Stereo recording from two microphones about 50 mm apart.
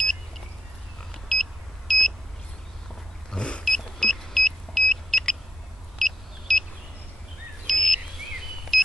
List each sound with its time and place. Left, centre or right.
1.3 s vehicle: centre
3.3 s vehicle: centre
3.6 s vehicle: centre
7.6 s a sound: centre
8.7 s vehicle: centre